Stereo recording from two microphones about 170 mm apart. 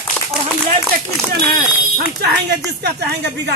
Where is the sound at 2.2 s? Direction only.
75° right (ahead or behind).